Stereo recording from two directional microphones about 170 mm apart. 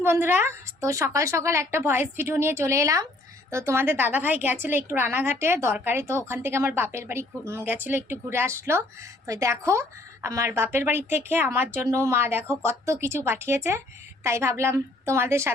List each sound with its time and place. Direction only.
0.0 s a woman's voice: 15° right (ahead or behind)